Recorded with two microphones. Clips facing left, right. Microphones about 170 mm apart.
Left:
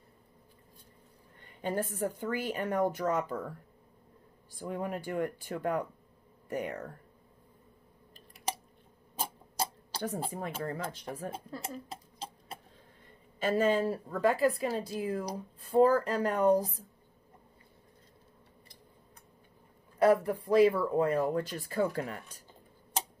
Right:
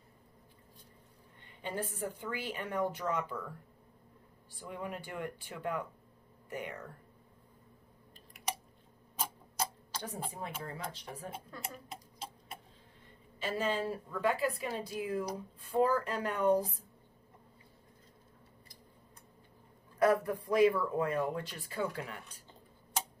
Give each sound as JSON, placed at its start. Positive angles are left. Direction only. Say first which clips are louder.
{"t": 1.6, "sound": "a woman's voice", "louder": "left 6 dB", "side_deg": 45}
{"t": 4.6, "sound": "a woman's voice", "louder": "left 6 dB", "side_deg": 45}
{"t": 9.2, "sound": "a sound", "louder": "left 2 dB", "side_deg": 30}
{"t": 10.3, "sound": "a woman's voice", "louder": "left 6 dB", "side_deg": 55}
{"t": 11.3, "sound": "a sound", "louder": "left 5 dB", "side_deg": 30}
{"t": 13.4, "sound": "a woman's voice", "louder": "left 7 dB", "side_deg": 50}
{"t": 20.0, "sound": "a woman's voice", "louder": "left 3 dB", "side_deg": 30}